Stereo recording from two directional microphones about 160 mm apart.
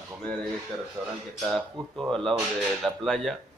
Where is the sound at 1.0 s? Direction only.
20° right (ahead or behind).